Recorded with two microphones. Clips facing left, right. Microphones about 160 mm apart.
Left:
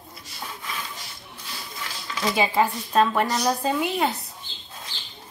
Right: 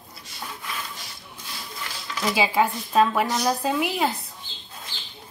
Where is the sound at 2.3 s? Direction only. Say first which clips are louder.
Even; 5° right (ahead or behind).